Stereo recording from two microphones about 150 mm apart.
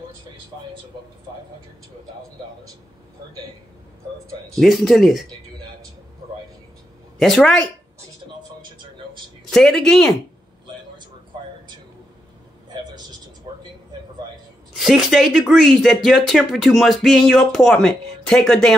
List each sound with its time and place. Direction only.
4.6 s speech: centre (ahead or behind)
7.2 s speech: centre (ahead or behind)
9.5 s speech: 5° left (ahead or behind)
13.5 s a sound: 30° right (ahead or behind)
14.7 s speech: centre (ahead or behind)